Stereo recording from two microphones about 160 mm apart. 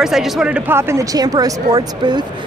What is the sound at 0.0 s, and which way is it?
Speech, 5° right (ahead or behind).